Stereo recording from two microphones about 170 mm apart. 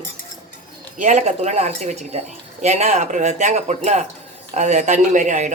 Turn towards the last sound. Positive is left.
turn(degrees=-45)  # may be behind; listen again after turning